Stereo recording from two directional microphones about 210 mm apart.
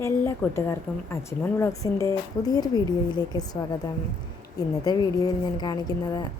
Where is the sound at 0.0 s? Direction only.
10° left (ahead or behind).